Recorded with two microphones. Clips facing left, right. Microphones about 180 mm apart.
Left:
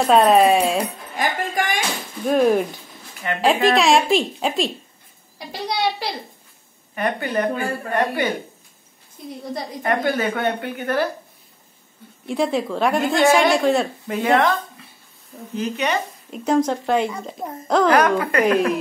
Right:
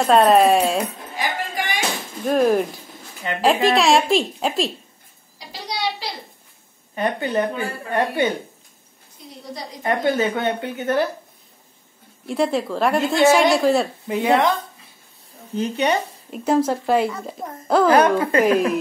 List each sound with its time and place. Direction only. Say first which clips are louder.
0.0 s a woman's voice: even; centre (ahead or behind)
1.1 s music: left 4 dB; 45° left (ahead or behind)
2.2 s a woman's voice: left 1 dB; centre (ahead or behind)
5.5 s a child's voice: left 4 dB; 55° left (ahead or behind)
7.0 s a woman's voice: right 1 dB; 25° right (ahead or behind)
9.8 s a woman's voice: right 1 dB; 20° right (ahead or behind)
12.3 s a woman's voice: even; centre (ahead or behind)
14.0 s speech: even; 15° right (ahead or behind)
15.5 s speech: right 2 dB; 35° right (ahead or behind)
16.3 s a woman's voice: even; 5° right (ahead or behind)
17.8 s a woman's voice: right 2 dB; 30° right (ahead or behind)
18.4 s a woman's voice: left 1 dB; 5° right (ahead or behind)